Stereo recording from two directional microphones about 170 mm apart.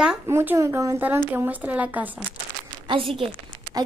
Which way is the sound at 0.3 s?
15° right (ahead or behind).